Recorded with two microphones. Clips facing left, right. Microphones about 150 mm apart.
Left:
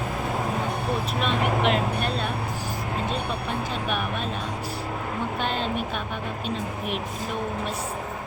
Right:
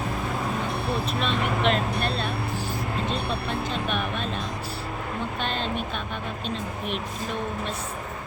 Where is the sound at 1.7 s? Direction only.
10° left (ahead or behind).